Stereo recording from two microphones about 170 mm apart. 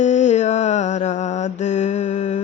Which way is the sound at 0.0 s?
45° left (ahead or behind).